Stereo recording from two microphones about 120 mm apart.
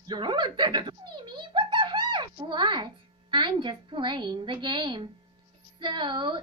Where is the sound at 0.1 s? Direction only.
40° right (ahead or behind).